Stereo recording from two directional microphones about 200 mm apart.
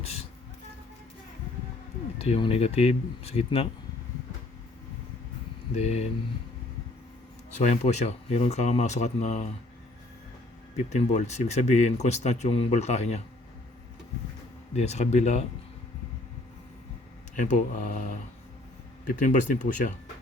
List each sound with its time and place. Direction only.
0.0 s a sound: 30° left (ahead or behind)
2.1 s speech: 30° left (ahead or behind)
5.7 s speech: 35° left (ahead or behind)
7.5 s speech: 35° left (ahead or behind)
10.8 s speech: 35° left (ahead or behind)
14.8 s speech: 35° left (ahead or behind)
17.3 s speech: 40° left (ahead or behind)